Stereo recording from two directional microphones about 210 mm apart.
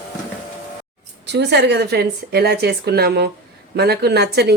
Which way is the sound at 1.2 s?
55° right (ahead or behind).